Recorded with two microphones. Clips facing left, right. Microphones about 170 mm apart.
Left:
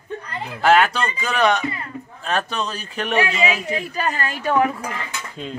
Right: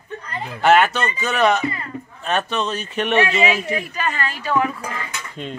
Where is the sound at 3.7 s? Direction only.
35° left (ahead or behind).